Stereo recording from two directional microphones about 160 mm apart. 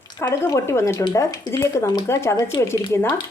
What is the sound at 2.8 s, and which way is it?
Cutlery, 20° left (ahead or behind).